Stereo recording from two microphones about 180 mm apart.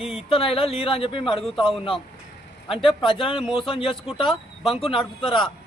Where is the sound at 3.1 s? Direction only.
30° left (ahead or behind).